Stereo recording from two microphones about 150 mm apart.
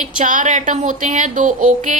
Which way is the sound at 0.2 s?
60° right (ahead or behind).